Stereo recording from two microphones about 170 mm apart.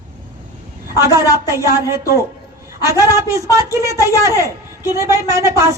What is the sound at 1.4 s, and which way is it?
A woman's voice, 20° right (ahead or behind).